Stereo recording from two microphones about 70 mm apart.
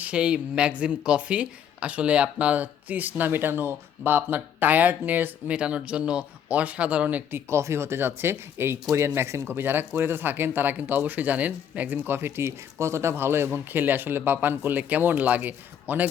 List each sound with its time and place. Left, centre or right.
0.0 s speech: centre